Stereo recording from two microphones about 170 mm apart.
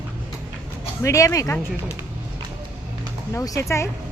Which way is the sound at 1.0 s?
20° left (ahead or behind).